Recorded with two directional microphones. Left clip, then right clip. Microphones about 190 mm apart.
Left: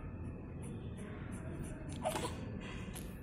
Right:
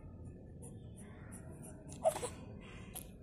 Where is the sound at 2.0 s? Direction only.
25° right (ahead or behind).